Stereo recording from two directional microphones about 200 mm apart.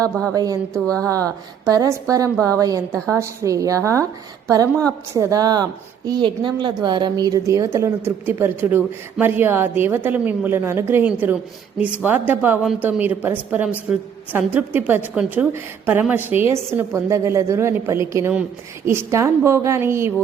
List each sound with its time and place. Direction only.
0.0 s speech: 5° left (ahead or behind)
0.3 s a woman's voice: 20° right (ahead or behind)
0.7 s speech: 5° left (ahead or behind)
1.6 s a woman's voice: 15° right (ahead or behind)